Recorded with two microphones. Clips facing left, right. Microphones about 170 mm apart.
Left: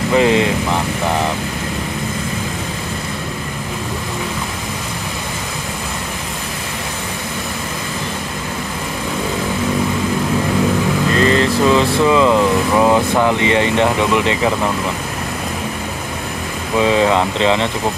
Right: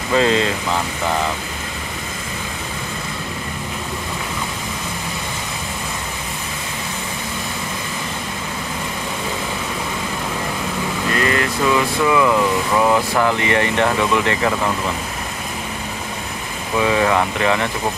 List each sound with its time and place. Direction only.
0.1 s speech: 20° left (ahead or behind)
11.1 s speech: 30° left (ahead or behind)
16.8 s speech: 20° left (ahead or behind)